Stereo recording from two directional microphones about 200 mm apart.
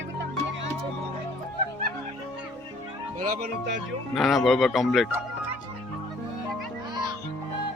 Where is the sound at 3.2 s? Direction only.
45° right (ahead or behind).